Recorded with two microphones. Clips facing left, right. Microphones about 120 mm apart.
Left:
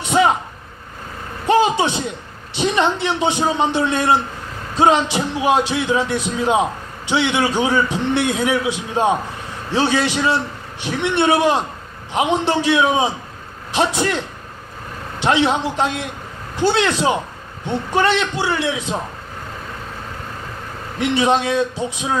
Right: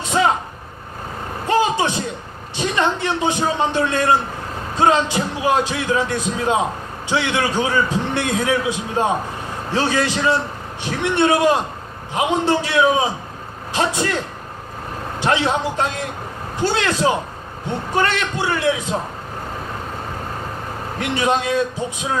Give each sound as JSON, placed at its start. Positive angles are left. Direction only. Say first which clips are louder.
{"t": 0.1, "sound": "vehicle", "louder": "left 2 dB", "side_deg": 15}
{"t": 1.5, "sound": "a sound", "louder": "left 2 dB", "side_deg": 25}
{"t": 2.6, "sound": "a man's voice", "louder": "left 2 dB", "side_deg": 20}
{"t": 15.2, "sound": "a man's voice", "louder": "left 2 dB", "side_deg": 20}
{"t": 21.0, "sound": "a man's voice", "louder": "left 3 dB", "side_deg": 20}